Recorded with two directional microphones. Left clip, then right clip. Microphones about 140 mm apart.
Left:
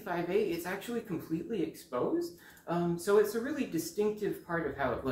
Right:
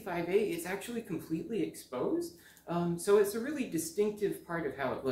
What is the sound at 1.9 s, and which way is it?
Speech, 20° right (ahead or behind).